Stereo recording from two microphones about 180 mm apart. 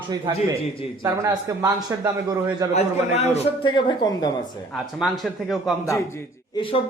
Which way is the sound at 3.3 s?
25° left (ahead or behind).